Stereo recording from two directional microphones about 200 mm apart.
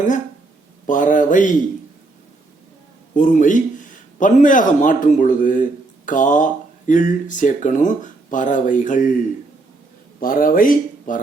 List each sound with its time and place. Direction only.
0.9 s speech: 40° left (ahead or behind)
3.2 s speech: 40° left (ahead or behind)
10.2 s speech: 45° left (ahead or behind)